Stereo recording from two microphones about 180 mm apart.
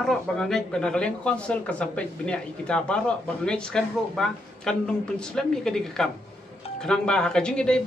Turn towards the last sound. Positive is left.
turn(degrees=5)  # may be behind; listen again after turning